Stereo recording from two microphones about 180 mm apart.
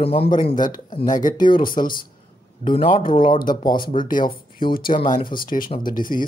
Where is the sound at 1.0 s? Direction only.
45° left (ahead or behind).